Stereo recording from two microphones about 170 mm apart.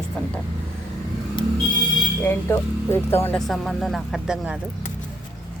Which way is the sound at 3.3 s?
Centre (ahead or behind).